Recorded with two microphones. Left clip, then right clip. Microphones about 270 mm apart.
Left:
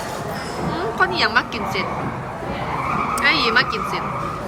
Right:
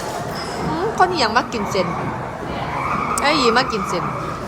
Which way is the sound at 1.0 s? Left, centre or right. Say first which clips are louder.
Right 1 dB; centre.